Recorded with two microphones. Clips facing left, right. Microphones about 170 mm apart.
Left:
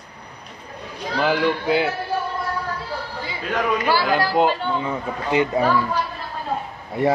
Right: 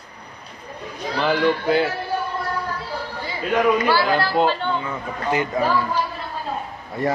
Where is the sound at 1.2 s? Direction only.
10° left (ahead or behind).